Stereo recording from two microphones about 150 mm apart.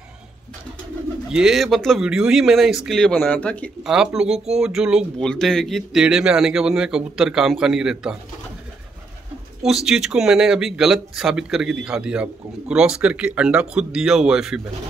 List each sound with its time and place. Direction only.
1.3 s speech: 5° right (ahead or behind)
3.8 s speech: 5° right (ahead or behind)
9.6 s speech: 5° right (ahead or behind)